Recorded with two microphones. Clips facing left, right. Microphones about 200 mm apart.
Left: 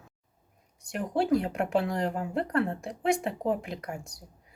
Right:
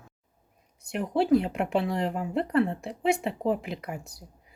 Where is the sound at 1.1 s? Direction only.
Centre (ahead or behind).